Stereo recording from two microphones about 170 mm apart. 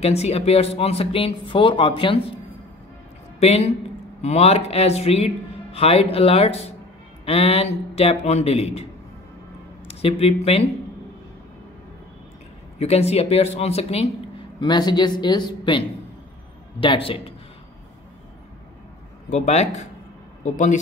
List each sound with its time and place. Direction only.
0.0 s speech: 40° left (ahead or behind)
3.3 s a woman's voice: 40° left (ahead or behind)
9.8 s speech: 35° left (ahead or behind)
12.7 s speech: 40° left (ahead or behind)
14.6 s speech: 25° left (ahead or behind)
16.8 s speech: 30° left (ahead or behind)
19.2 s speech: 45° left (ahead or behind)